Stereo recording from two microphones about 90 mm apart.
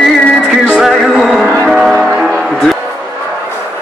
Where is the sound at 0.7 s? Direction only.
Centre (ahead or behind).